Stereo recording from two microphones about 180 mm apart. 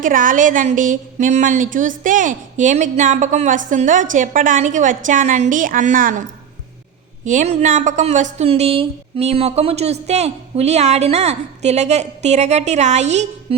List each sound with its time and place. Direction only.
0.0 s a woman's voice: 45° right (ahead or behind)
7.3 s a woman's voice: 40° right (ahead or behind)